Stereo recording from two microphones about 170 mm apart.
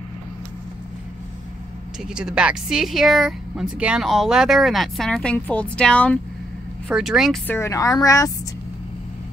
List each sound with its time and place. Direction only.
2.0 s speech: 5° right (ahead or behind)
7.4 s a woman's voice: 15° left (ahead or behind)